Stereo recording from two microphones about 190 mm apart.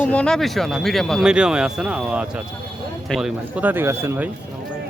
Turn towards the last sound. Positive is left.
turn(degrees=-10)  # may be behind; listen again after turning